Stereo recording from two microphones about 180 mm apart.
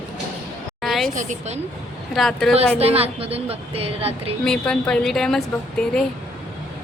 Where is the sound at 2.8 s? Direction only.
35° right (ahead or behind).